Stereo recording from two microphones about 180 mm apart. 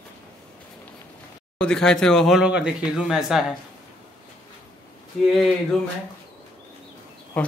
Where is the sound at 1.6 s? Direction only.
5° left (ahead or behind).